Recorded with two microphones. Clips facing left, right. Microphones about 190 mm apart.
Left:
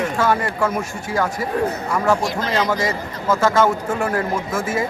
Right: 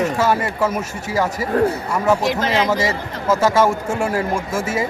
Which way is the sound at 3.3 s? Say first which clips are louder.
Right 1 dB; 5° right (ahead or behind).